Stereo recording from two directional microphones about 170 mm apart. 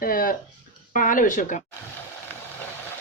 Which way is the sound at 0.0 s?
55° left (ahead or behind).